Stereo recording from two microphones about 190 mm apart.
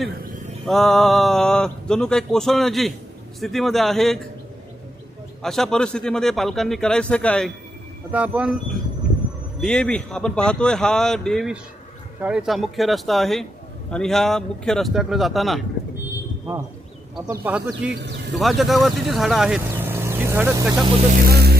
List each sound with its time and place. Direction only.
0.6 s speech: centre (ahead or behind)
5.4 s speech: centre (ahead or behind)
8.1 s speech: 5° right (ahead or behind)
9.6 s speech: 5° left (ahead or behind)
17.2 s speech: 10° right (ahead or behind)
17.9 s a man's voice: 65° right (ahead or behind)
18.3 s speech: centre (ahead or behind)
21.1 s music: 50° right (ahead or behind)